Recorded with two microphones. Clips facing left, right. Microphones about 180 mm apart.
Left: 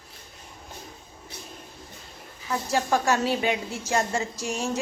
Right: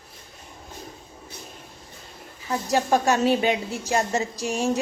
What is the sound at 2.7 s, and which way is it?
A woman's voice, 20° right (ahead or behind).